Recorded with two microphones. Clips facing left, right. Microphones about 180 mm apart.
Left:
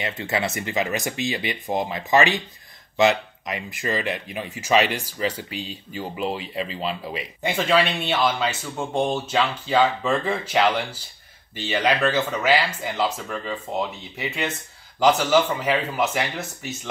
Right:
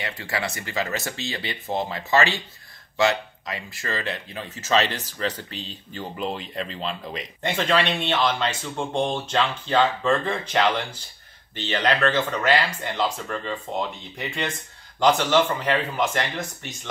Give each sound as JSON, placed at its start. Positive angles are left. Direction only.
{"t": 0.0, "sound": "speech", "side_deg": 20}